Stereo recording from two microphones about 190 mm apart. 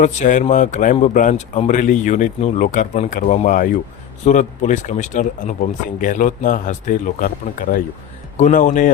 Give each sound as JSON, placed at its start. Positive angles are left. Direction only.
{"t": 0.0, "sound": "speech", "side_deg": 40}